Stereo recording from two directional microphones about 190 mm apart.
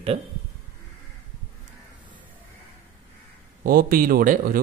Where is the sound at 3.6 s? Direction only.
50° right (ahead or behind).